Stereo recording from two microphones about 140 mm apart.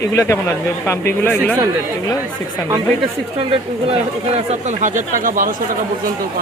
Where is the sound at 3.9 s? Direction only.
45° right (ahead or behind).